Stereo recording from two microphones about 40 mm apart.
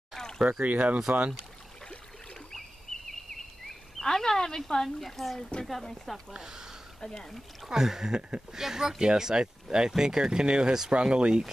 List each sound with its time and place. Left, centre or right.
0.4 s speech: right
3.1 s a sound: centre
4.8 s speech: centre
6.4 s speech: centre
7.0 s speech: centre
7.6 s speech: centre